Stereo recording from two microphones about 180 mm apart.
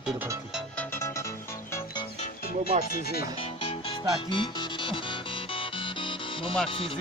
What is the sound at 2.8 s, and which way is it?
Speech, 55° left (ahead or behind).